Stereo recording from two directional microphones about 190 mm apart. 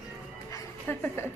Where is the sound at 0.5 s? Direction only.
10° left (ahead or behind).